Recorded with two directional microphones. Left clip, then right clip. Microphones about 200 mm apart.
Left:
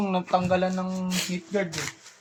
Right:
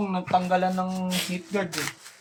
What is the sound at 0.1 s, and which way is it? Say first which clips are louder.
Speech: right 1 dB; 35° left (ahead or behind).